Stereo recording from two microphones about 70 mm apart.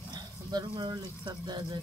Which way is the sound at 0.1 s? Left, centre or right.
Right.